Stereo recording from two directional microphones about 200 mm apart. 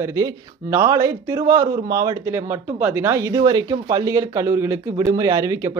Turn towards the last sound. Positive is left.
turn(degrees=-15)  # may be behind; listen again after turning